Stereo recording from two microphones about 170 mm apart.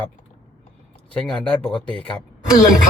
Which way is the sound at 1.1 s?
5° left (ahead or behind).